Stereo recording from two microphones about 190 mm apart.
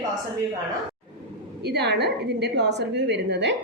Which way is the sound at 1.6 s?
60° right (ahead or behind).